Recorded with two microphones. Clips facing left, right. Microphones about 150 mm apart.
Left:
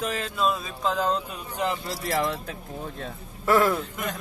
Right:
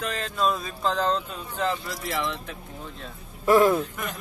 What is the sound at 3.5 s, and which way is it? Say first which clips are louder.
Speech: right 3 dB; 15° right (ahead or behind).